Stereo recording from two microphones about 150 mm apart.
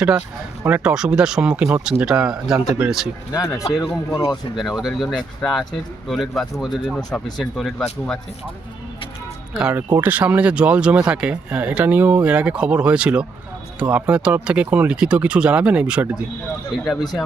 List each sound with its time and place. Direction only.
0.6 s speech: 10° right (ahead or behind)
3.3 s speech: 20° left (ahead or behind)
4.3 s speech: centre (ahead or behind)
9.6 s speech: 5° right (ahead or behind)